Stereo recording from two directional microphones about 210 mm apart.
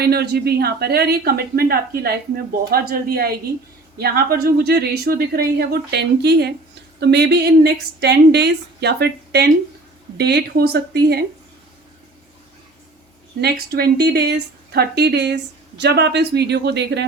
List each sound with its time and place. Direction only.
0.0 s speech: 50° right (ahead or behind)
13.4 s speech: 50° right (ahead or behind)